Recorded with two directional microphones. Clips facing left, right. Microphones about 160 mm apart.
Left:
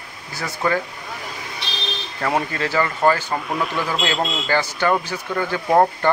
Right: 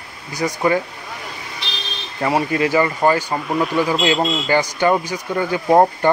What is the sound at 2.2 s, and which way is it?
Speech, 10° right (ahead or behind).